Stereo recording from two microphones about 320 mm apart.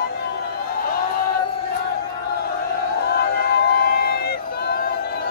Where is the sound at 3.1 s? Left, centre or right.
Left.